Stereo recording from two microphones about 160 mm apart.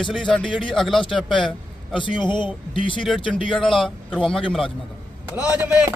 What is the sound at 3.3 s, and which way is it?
Speech, centre (ahead or behind).